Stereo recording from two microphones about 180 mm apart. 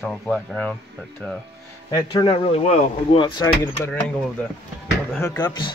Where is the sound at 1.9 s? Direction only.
25° left (ahead or behind).